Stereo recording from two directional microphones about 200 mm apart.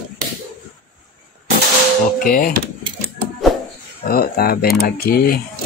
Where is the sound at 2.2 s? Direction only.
45° left (ahead or behind).